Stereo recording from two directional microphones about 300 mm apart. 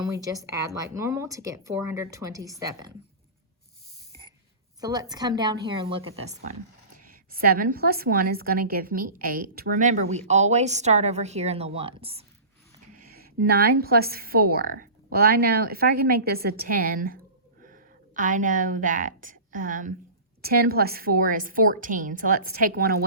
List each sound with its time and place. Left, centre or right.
0.1 s speech: centre
4.8 s a woman's voice: centre
13.1 s a woman's voice: right